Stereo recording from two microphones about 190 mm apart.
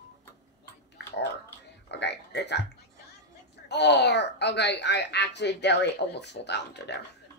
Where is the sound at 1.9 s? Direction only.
65° left (ahead or behind).